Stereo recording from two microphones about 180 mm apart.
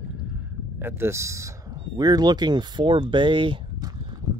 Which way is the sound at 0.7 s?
15° right (ahead or behind).